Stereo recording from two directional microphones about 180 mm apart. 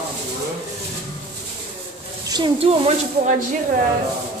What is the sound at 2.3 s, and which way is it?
Speech, 30° right (ahead or behind).